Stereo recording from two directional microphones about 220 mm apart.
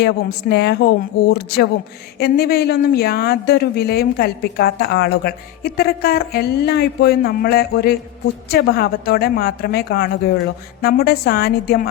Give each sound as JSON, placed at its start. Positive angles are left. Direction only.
{"t": 0.0, "sound": "speech", "side_deg": 50}